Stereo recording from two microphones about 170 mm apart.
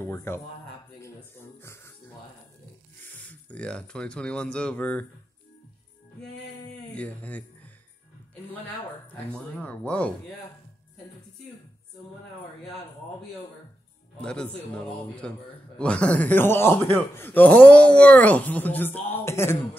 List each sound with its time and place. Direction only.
0.0 s speech: 15° left (ahead or behind)
1.6 s music: 15° left (ahead or behind)
3.0 s speech: 10° left (ahead or behind)
7.0 s speech: 10° left (ahead or behind)
9.1 s a man's voice: 10° left (ahead or behind)
14.2 s a man's voice: 5° left (ahead or behind)